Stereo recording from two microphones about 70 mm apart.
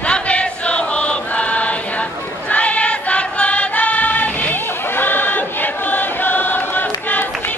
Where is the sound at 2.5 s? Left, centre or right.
Centre.